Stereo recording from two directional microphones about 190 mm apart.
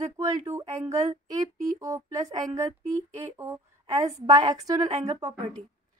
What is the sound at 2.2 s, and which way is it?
Speech, 40° right (ahead or behind).